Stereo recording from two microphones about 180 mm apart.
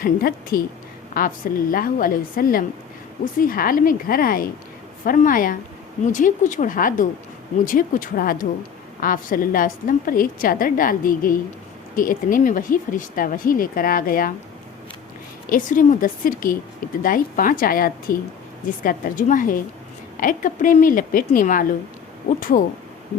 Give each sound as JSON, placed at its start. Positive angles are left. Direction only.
{"t": 0.0, "sound": "a woman's voice", "side_deg": 55}
{"t": 15.4, "sound": "speech", "side_deg": 50}